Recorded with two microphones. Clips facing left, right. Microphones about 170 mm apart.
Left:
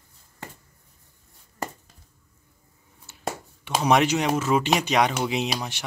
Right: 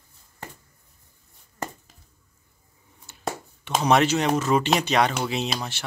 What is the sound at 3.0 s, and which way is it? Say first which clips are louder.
Speech: right 1 dB; 5° left (ahead or behind).